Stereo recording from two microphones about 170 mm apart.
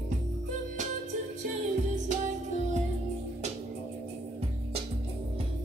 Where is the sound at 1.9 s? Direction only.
45° right (ahead or behind).